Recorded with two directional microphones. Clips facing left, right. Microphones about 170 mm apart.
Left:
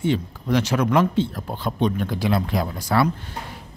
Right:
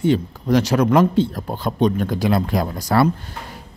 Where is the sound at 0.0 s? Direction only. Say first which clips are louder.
Right 5 dB; 40° right (ahead or behind).